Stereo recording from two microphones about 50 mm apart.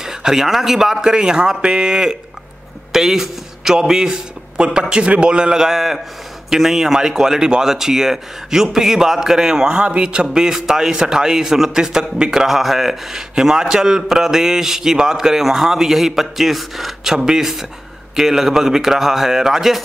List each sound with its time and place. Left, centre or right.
0.0 s a man's voice: centre
10.2 s a man's voice: centre